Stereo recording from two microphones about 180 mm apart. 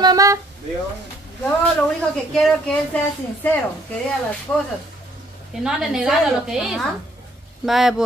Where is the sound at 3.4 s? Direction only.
10° left (ahead or behind).